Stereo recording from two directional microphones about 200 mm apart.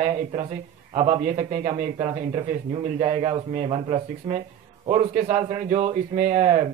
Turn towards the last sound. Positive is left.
turn(degrees=-35)  # may be behind; listen again after turning